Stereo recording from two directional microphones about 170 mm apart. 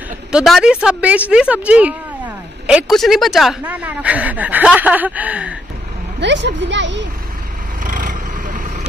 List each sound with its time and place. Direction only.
0.3 s speech: centre (ahead or behind)
6.1 s speech: 90° right
7.8 s vehicle: 50° right (ahead or behind)